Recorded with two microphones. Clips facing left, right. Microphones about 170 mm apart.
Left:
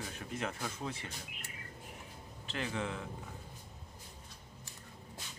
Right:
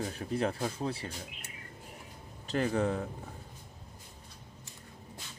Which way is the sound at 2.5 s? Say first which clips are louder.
Right 9 dB; 40° right (ahead or behind).